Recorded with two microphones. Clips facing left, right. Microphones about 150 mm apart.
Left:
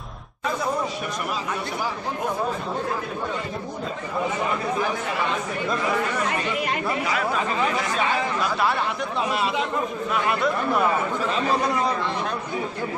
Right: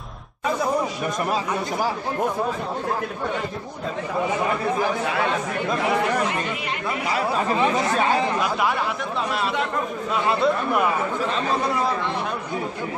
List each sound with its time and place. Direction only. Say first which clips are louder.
7.2 s speech: right 2 dB; 25° right (ahead or behind)
10.1 s speech: right 3 dB; 25° right (ahead or behind)